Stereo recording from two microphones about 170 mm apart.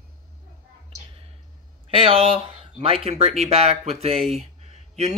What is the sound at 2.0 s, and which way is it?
Speech, 30° right (ahead or behind).